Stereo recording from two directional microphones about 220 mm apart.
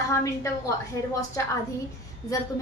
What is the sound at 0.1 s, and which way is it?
A woman's voice, 15° left (ahead or behind).